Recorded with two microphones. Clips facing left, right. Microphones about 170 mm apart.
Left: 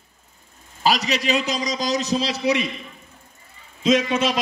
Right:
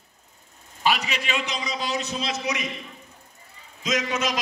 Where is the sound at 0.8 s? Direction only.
40° left (ahead or behind).